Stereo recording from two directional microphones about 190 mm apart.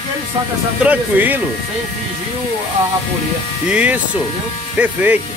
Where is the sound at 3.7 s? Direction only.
5° right (ahead or behind).